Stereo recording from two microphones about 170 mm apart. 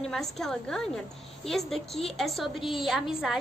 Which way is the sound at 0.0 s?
Centre (ahead or behind).